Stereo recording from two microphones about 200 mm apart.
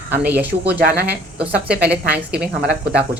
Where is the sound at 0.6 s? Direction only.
55° right (ahead or behind).